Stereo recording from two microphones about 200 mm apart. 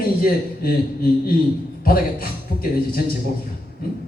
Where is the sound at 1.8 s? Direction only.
45° left (ahead or behind).